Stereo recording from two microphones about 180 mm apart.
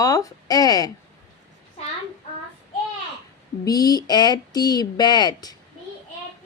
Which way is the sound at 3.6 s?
20° left (ahead or behind).